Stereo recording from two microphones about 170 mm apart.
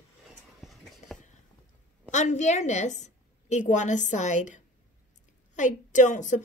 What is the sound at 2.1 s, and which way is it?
A woman's voice, 45° left (ahead or behind).